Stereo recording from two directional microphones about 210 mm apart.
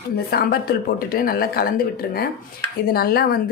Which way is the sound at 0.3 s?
45° left (ahead or behind).